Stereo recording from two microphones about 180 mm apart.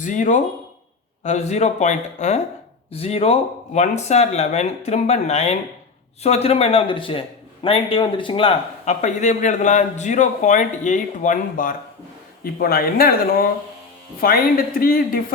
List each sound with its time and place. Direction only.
0.0 s a man's voice: 45° left (ahead or behind)